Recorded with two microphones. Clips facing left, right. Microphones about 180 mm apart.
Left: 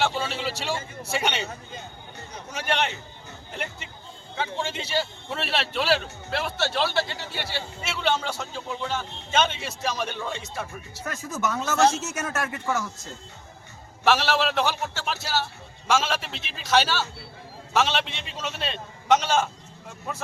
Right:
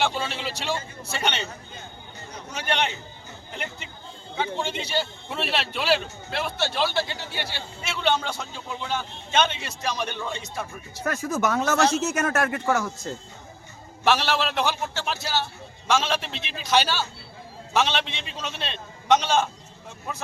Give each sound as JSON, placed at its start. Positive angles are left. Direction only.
{"t": 0.0, "sound": "a man's voice", "side_deg": 5}
{"t": 2.5, "sound": "a man's voice", "side_deg": 5}
{"t": 11.0, "sound": "speech", "side_deg": -65}
{"t": 14.0, "sound": "a man's voice", "side_deg": 5}